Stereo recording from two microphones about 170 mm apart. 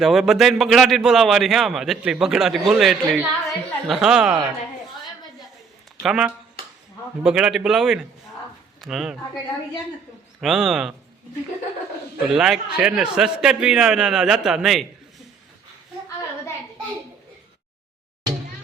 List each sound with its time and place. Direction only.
0.0 s a man's voice: centre (ahead or behind)
6.0 s a man's voice: 5° right (ahead or behind)
10.4 s a man's voice: 5° right (ahead or behind)
12.3 s a man's voice: 5° right (ahead or behind)